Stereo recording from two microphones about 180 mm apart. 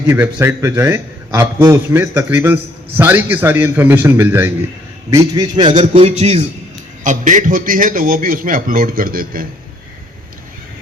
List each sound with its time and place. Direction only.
0.1 s a man's voice: 15° right (ahead or behind)
5.9 s a man's voice: 35° right (ahead or behind); by 9.5 s 50° right (ahead or behind)